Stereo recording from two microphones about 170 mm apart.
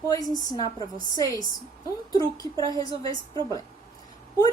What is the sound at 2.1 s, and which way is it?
Speech, 20° left (ahead or behind).